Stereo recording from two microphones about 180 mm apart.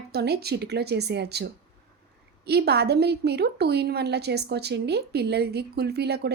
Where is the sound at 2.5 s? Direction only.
65° right (ahead or behind).